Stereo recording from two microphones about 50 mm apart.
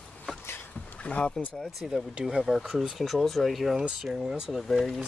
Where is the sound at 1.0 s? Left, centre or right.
Left.